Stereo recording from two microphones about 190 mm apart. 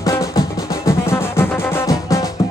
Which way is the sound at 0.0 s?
15° left (ahead or behind).